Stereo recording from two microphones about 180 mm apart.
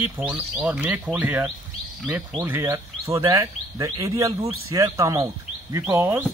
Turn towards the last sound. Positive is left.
turn(degrees=-15)  # may be behind; listen again after turning